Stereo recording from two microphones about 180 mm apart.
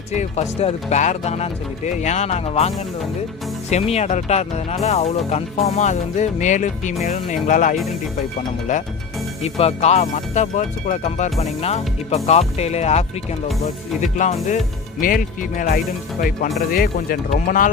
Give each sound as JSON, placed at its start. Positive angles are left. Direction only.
{"t": 0.1, "sound": "speech", "side_deg": 40}
{"t": 3.7, "sound": "speech", "side_deg": 35}